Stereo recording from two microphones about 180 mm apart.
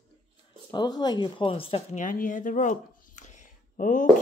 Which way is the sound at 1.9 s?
45° left (ahead or behind).